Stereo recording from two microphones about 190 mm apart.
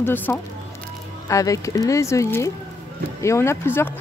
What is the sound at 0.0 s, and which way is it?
Speech, 10° left (ahead or behind).